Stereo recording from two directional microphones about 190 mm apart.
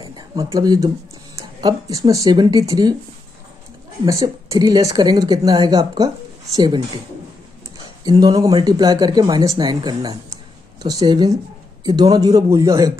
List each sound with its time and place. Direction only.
0.0 s a sound: 20° right (ahead or behind)
1.6 s speech: 20° right (ahead or behind)
4.0 s speech: 15° right (ahead or behind)
8.0 s speech: 20° right (ahead or behind)